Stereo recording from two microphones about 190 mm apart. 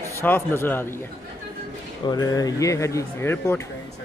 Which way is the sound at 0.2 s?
10° left (ahead or behind).